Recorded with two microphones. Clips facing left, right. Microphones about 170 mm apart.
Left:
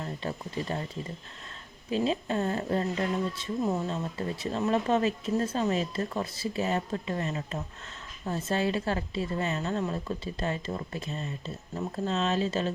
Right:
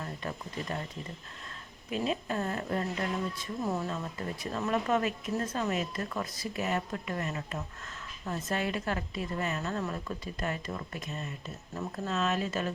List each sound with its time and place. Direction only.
0.0 s speech: 30° left (ahead or behind)
1.9 s speech: 30° left (ahead or behind)